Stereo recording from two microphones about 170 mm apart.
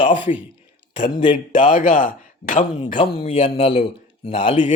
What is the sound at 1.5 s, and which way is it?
A man's voice, 50° left (ahead or behind).